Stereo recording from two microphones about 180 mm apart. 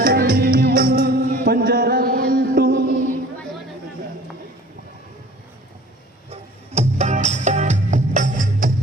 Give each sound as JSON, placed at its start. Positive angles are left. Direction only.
{"t": 0.0, "sound": "music", "side_deg": -55}
{"t": 6.3, "sound": "music", "side_deg": -40}